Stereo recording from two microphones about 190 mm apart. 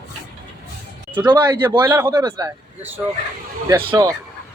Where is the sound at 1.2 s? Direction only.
25° right (ahead or behind).